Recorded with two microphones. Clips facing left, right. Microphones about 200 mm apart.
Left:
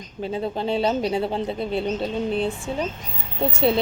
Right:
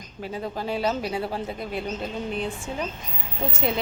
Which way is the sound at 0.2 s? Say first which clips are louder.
Left 5 dB; 25° left (ahead or behind).